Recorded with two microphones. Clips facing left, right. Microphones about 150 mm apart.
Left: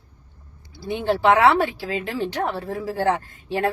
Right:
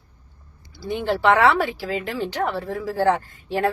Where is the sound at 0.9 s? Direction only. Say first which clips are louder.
Left 1 dB; 15° left (ahead or behind).